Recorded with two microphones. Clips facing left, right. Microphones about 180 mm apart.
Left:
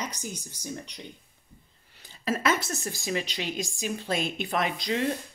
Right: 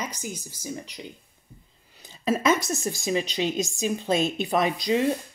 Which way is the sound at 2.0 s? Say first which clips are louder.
Right 4 dB; 20° right (ahead or behind).